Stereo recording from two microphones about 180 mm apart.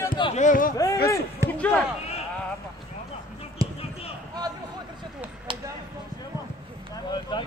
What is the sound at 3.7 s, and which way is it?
Basketball bounce, 35° left (ahead or behind).